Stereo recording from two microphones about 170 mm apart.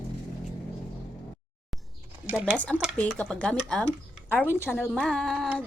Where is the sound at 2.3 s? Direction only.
10° right (ahead or behind).